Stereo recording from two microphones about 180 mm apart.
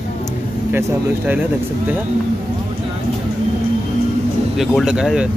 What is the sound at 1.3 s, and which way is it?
Speech, 10° right (ahead or behind).